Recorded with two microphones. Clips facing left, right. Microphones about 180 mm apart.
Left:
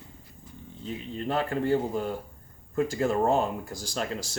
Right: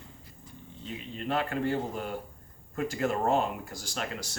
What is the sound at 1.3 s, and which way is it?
A man's voice, 35° left (ahead or behind).